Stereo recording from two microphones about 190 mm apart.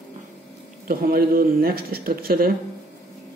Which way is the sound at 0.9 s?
50° right (ahead or behind).